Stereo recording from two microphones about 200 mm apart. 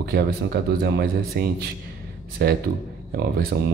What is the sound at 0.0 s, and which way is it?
A man's voice, 50° right (ahead or behind).